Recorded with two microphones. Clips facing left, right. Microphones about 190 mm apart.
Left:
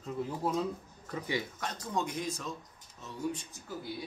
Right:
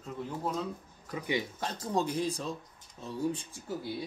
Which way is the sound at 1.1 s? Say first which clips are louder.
Right 2 dB; 15° right (ahead or behind).